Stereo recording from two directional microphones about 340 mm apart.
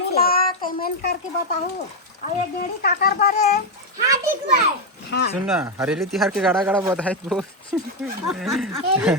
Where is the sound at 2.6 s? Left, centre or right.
Left.